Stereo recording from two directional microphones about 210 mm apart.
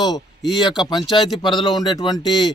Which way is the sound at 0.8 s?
20° left (ahead or behind).